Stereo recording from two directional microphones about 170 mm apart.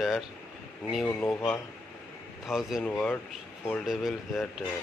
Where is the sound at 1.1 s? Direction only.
15° left (ahead or behind).